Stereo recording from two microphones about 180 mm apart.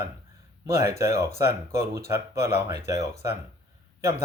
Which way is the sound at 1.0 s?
15° right (ahead or behind).